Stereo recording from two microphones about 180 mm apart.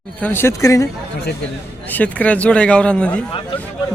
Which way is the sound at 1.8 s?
10° left (ahead or behind).